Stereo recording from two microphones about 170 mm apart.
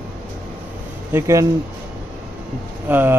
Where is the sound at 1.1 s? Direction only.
15° right (ahead or behind).